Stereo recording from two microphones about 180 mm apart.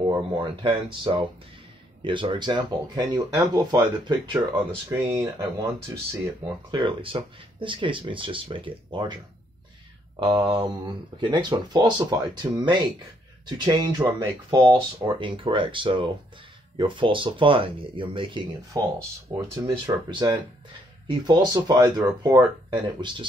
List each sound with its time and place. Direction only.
0.1 s speech: 25° right (ahead or behind)
6.7 s speech: 25° right (ahead or behind)
10.1 s speech: 25° right (ahead or behind)